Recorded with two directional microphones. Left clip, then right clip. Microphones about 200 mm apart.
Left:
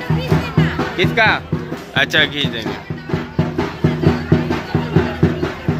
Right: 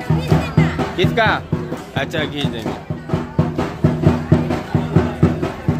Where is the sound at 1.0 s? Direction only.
20° right (ahead or behind).